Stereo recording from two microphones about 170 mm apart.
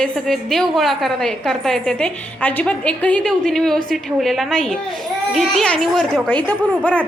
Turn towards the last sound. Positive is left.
turn(degrees=5)  # may be behind; listen again after turning